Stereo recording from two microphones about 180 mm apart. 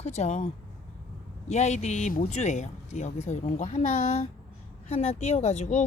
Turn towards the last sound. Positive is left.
turn(degrees=40)  # may be behind; listen again after turning